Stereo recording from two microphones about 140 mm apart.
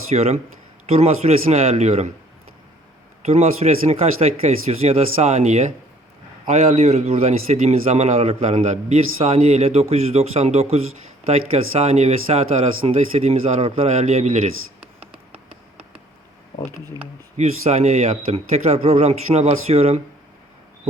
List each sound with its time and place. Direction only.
0.1 s speech: 50° right (ahead or behind)
3.2 s speech: 50° right (ahead or behind)
17.0 s speech: 50° right (ahead or behind)